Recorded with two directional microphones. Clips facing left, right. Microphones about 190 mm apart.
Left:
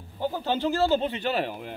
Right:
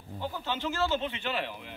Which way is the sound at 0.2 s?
40° left (ahead or behind).